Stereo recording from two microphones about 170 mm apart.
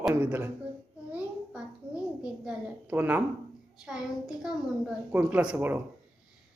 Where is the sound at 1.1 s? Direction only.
5° right (ahead or behind).